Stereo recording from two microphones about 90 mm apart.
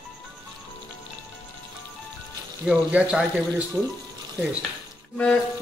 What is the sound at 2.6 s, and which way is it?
Speech, 10° right (ahead or behind).